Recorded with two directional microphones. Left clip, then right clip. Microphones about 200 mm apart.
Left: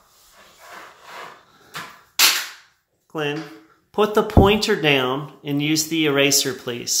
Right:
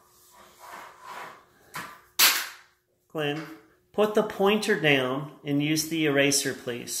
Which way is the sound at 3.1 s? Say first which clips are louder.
Left 5 dB; 15° left (ahead or behind).